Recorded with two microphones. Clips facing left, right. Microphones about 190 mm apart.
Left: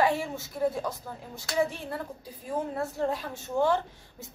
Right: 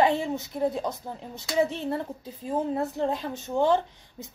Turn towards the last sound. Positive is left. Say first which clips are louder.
# right 4 dB
turn(degrees=-20)  # may be behind; listen again after turning